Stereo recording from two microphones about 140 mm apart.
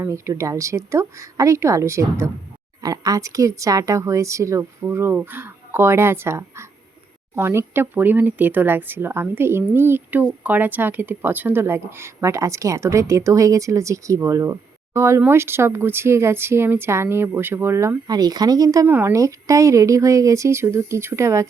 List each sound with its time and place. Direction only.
0.0 s speech: 20° right (ahead or behind)